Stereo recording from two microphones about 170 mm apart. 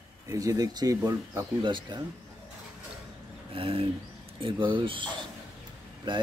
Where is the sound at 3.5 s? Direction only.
35° right (ahead or behind).